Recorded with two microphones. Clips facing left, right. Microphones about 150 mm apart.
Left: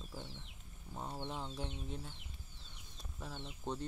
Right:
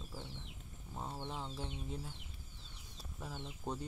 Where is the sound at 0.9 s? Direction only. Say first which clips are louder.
Left 1 dB; centre (ahead or behind).